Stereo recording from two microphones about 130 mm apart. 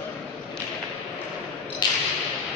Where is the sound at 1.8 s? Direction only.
35° left (ahead or behind).